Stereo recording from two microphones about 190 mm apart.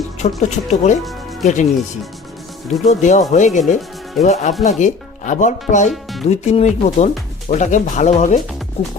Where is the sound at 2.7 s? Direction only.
40° left (ahead or behind).